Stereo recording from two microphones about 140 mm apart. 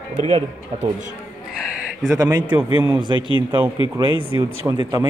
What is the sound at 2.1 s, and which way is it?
Speech, 25° right (ahead or behind).